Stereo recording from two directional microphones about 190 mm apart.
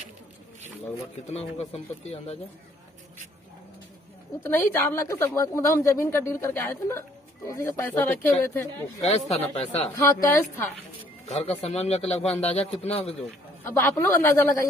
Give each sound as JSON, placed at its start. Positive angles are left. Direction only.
{"t": 1.2, "sound": "speech", "side_deg": 35}
{"t": 4.5, "sound": "a woman's voice", "side_deg": 10}
{"t": 9.0, "sound": "speech", "side_deg": 35}
{"t": 9.9, "sound": "a woman's voice", "side_deg": 15}
{"t": 11.3, "sound": "speech", "side_deg": 35}
{"t": 13.7, "sound": "a woman's voice", "side_deg": 10}